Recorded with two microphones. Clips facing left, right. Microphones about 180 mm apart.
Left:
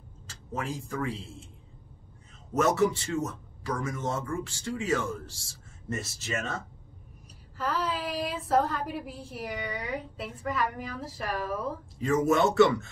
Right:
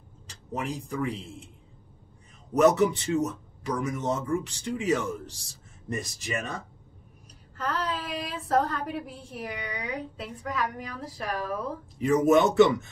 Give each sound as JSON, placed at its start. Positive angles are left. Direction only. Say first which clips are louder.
{"t": 0.3, "sound": "a man's voice", "louder": "right 2 dB", "side_deg": -15}
{"t": 2.5, "sound": "a man's voice", "louder": "right 4 dB", "side_deg": -20}
{"t": 7.5, "sound": "a woman's voice", "louder": "even", "side_deg": 0}
{"t": 12.0, "sound": "a man's voice", "louder": "right 3 dB", "side_deg": -20}